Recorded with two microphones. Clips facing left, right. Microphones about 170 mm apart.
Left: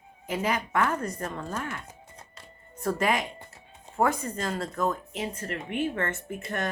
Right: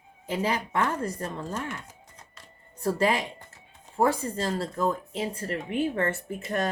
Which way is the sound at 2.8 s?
30° right (ahead or behind).